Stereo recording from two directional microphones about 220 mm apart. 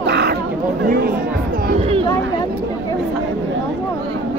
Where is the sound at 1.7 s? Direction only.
25° right (ahead or behind).